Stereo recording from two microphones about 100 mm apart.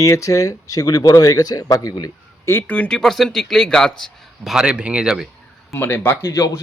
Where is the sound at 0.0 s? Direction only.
35° left (ahead or behind).